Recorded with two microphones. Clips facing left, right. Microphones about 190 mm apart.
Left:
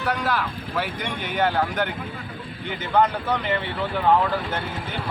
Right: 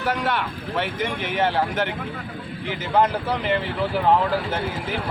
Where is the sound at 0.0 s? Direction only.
Centre (ahead or behind).